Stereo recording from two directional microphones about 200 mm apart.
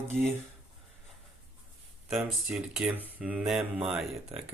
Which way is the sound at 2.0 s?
5° right (ahead or behind).